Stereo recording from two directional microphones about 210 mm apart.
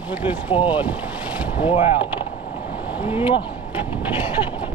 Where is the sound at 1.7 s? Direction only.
25° left (ahead or behind).